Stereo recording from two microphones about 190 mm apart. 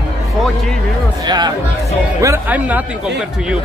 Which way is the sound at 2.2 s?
10° right (ahead or behind).